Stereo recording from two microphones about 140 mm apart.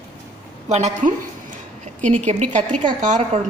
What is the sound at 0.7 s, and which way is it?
Speech, 50° right (ahead or behind).